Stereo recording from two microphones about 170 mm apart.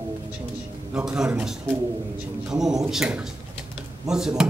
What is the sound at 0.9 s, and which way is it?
Speech, 5° right (ahead or behind).